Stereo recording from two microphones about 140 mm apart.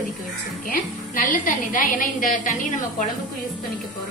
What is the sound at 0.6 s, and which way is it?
A woman's voice, 85° left.